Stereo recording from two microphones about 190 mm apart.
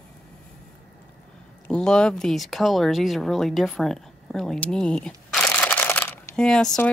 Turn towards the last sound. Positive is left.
turn(degrees=5)  # may be behind; listen again after turning